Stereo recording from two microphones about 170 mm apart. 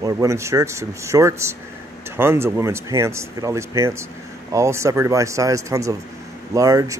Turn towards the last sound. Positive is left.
turn(degrees=-20)  # may be behind; listen again after turning